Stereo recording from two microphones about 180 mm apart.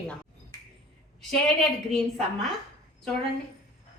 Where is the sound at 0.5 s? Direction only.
20° left (ahead or behind).